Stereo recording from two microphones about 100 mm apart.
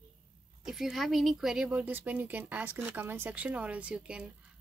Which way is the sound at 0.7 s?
5° right (ahead or behind).